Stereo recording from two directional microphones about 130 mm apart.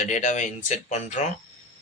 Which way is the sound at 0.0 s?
70° left (ahead or behind).